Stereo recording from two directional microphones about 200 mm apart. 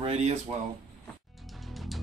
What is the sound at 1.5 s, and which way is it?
Music, centre (ahead or behind).